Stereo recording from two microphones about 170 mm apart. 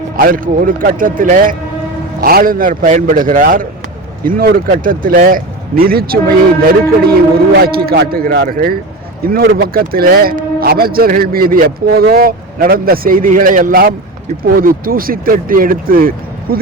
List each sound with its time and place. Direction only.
0.2 s a man's voice: 55° right (ahead or behind)